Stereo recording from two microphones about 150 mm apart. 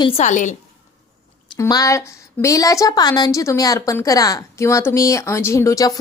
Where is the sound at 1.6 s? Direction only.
25° left (ahead or behind).